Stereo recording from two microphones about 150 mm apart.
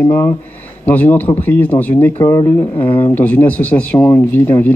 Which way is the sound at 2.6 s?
35° left (ahead or behind).